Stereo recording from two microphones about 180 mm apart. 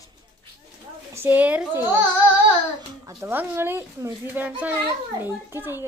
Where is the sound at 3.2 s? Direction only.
10° right (ahead or behind).